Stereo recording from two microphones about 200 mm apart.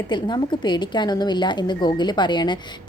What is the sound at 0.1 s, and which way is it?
A woman's voice, 20° left (ahead or behind).